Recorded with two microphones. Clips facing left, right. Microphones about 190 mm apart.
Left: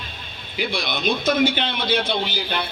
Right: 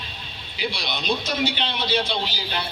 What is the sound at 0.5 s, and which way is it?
A man's voice, 50° left (ahead or behind).